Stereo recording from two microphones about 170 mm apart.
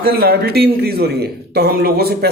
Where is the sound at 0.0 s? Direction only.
65° right (ahead or behind).